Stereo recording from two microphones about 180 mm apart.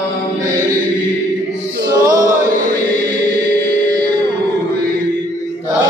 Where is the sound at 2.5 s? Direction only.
50° right (ahead or behind).